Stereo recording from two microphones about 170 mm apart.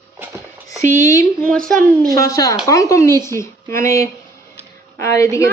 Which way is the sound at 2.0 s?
20° left (ahead or behind).